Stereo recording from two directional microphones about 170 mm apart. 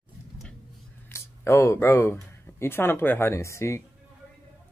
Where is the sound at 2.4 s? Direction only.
15° left (ahead or behind).